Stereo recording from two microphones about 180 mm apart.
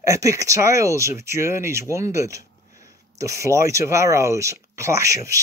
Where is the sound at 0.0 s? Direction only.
15° right (ahead or behind).